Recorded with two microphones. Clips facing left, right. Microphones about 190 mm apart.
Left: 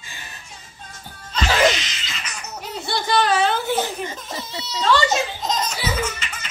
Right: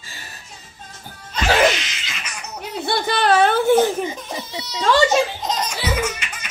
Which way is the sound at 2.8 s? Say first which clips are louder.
Right 2 dB; 60° right (ahead or behind).